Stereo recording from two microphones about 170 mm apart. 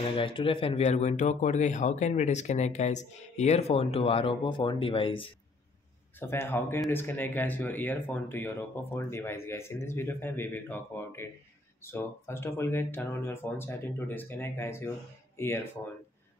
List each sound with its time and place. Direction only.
0.1 s speech: 30° left (ahead or behind)
6.1 s speech: 15° left (ahead or behind)